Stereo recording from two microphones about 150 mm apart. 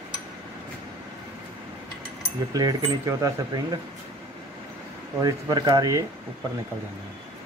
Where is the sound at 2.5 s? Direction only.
25° right (ahead or behind).